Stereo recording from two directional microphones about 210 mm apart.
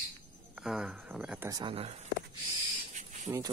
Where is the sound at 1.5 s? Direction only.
25° right (ahead or behind).